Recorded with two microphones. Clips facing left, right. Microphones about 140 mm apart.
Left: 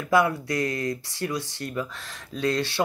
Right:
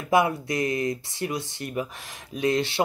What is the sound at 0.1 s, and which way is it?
Speech, 20° right (ahead or behind).